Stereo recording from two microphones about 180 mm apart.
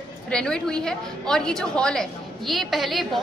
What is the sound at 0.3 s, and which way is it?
A woman's voice, 5° left (ahead or behind).